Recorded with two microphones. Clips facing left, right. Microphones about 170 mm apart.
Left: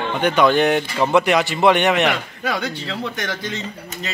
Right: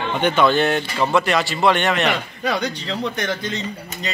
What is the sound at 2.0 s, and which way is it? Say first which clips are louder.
Speech: even; 5° left (ahead or behind).